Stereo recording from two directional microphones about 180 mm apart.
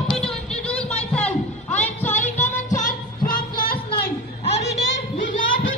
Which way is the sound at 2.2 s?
40° left (ahead or behind).